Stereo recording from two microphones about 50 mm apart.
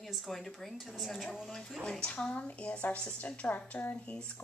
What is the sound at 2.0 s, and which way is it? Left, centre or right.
A woman's voice, left.